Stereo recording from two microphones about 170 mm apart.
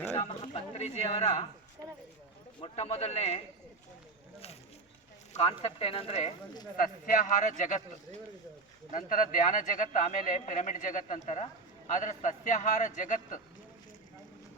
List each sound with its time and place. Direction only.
0.1 s speech: 35° left (ahead or behind)
2.6 s speech: 35° left (ahead or behind)
5.3 s speech: 40° left (ahead or behind)
6.7 s speech: 55° left (ahead or behind)
8.9 s speech: 50° left (ahead or behind)